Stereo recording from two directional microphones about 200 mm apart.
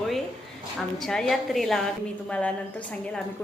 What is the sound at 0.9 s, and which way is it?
A woman's voice, centre (ahead or behind).